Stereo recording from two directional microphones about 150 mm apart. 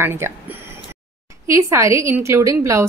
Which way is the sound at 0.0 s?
15° right (ahead or behind).